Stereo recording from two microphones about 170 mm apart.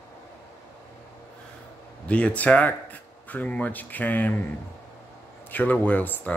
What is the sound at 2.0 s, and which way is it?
Speech, 5° left (ahead or behind).